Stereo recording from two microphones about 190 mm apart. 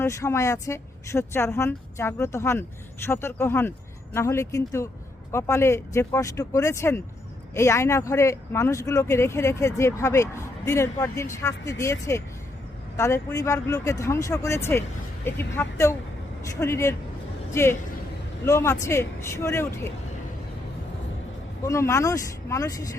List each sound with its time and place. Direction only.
0.0 s speech: 15° left (ahead or behind)
21.6 s speech: 15° left (ahead or behind)